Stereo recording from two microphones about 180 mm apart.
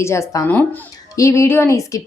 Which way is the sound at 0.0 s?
15° left (ahead or behind).